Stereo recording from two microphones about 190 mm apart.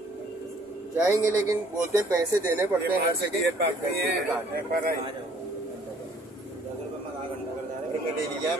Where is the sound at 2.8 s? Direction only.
60° right (ahead or behind).